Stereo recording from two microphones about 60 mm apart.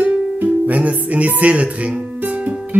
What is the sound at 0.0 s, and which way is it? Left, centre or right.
Music, right.